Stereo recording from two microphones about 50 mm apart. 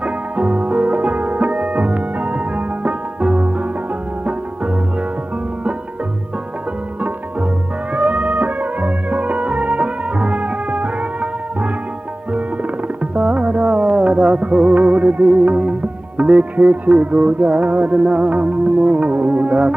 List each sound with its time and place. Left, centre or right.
0.0 s music: right
7.0 s music: right